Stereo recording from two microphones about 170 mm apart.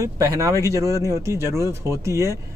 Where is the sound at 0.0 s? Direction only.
20° right (ahead or behind).